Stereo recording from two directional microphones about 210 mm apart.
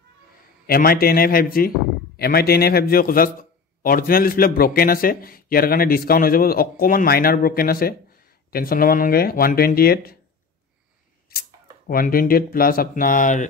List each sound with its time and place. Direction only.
0.7 s a man's voice: 45° left (ahead or behind)
11.3 s a man's voice: 45° left (ahead or behind)